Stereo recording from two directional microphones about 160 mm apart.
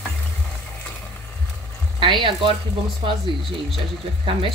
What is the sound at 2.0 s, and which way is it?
Speech, 30° right (ahead or behind).